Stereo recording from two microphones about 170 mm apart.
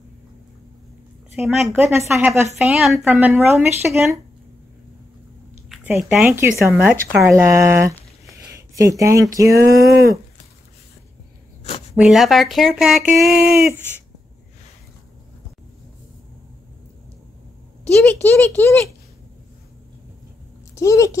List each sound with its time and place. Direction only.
1.4 s speech: centre (ahead or behind)
1.7 s speech: 15° right (ahead or behind)
2.5 s speech: centre (ahead or behind)
5.9 s speech: 5° right (ahead or behind)
12.0 s speech: centre (ahead or behind)
18.0 s speech: 15° left (ahead or behind)
20.7 s speech: 20° left (ahead or behind)